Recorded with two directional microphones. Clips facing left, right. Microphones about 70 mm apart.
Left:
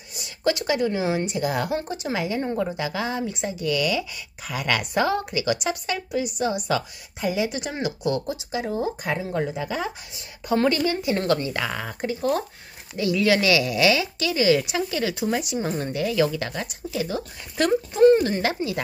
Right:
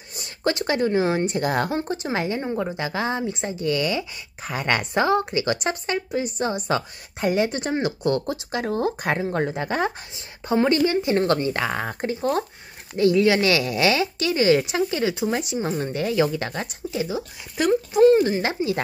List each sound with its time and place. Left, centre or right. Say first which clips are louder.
0.1 s a woman's voice: left 1 dB; right
1.7 s speech: right 1 dB; right
2.4 s speech: even; centre
2.8 s speech: right 1 dB; right
7.2 s speech: right 3 dB; right
8.5 s speech: right 2 dB; right
9.2 s speech: right 2 dB; right
10.1 s speech: left 1 dB; right
15.8 s speech: even; right
17.1 s speech: right 1 dB; centre
18.4 s speech: right 1 dB; right